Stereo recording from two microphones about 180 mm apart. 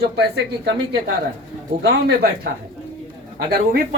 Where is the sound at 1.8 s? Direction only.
65° right (ahead or behind).